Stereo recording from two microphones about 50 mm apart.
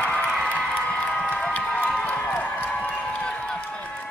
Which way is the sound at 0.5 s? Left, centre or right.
Centre.